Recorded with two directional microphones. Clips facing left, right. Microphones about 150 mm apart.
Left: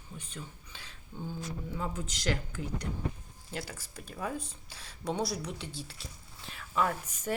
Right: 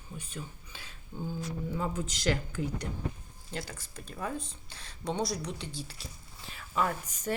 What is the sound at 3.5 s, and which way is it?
Speech, 5° left (ahead or behind).